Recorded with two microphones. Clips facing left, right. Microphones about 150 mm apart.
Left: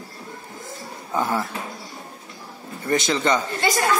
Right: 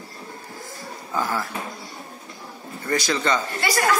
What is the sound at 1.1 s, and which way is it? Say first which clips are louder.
Speech: left 2 dB; 20° left (ahead or behind).